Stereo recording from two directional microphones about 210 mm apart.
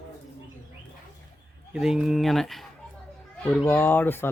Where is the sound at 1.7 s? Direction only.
5° right (ahead or behind).